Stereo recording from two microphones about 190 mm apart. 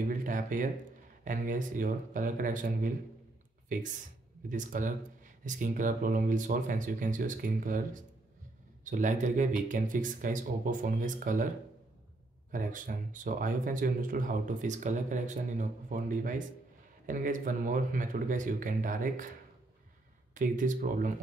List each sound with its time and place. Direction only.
0.1 s a sound: 45° right (ahead or behind)
1.2 s speech: 45° right (ahead or behind)
12.4 s speech: 45° right (ahead or behind)
20.3 s speech: 45° right (ahead or behind)